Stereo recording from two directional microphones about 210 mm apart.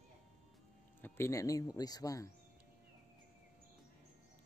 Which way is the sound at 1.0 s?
10° left (ahead or behind).